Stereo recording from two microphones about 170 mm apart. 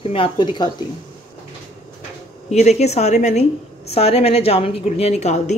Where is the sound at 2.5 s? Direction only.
40° left (ahead or behind).